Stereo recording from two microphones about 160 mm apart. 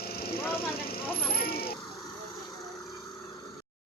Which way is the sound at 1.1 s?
70° left (ahead or behind).